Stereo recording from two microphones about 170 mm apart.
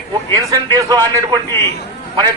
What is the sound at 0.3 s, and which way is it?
A man's voice, 20° right (ahead or behind).